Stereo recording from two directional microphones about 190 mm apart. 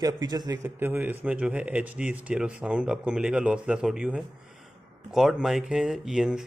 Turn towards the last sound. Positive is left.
turn(degrees=-5)  # may be behind; listen again after turning